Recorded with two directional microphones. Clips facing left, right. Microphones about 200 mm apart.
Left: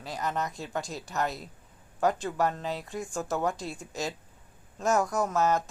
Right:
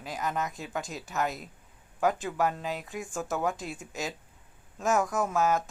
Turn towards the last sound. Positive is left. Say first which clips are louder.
# even
turn(degrees=0)  # may be behind; listen again after turning